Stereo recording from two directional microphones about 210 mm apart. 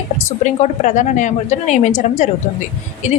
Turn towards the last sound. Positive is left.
turn(degrees=30)  # may be behind; listen again after turning